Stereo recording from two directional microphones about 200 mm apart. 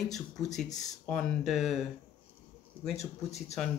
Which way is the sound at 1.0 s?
5° left (ahead or behind).